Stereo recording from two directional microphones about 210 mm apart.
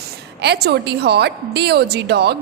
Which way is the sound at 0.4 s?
50° right (ahead or behind).